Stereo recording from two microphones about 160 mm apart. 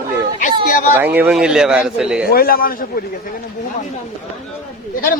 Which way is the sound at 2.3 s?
70° left (ahead or behind).